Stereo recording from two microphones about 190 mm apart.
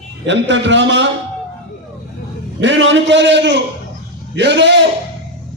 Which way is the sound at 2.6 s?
75° right (ahead or behind).